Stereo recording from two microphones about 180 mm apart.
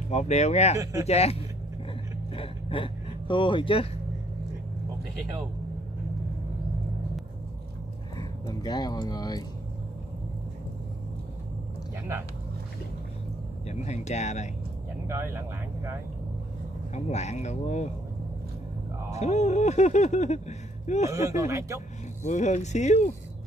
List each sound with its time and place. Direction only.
0.1 s speech: 40° left (ahead or behind)
2.3 s a sound: 30° left (ahead or behind)
8.2 s speech: 25° left (ahead or behind)
13.7 s speech: 40° left (ahead or behind)
15.0 s speech: 15° right (ahead or behind)
16.9 s speech: 40° left (ahead or behind)
19.1 s speech: 40° left (ahead or behind)
21.1 s speech: 15° right (ahead or behind)
22.2 s speech: 40° left (ahead or behind)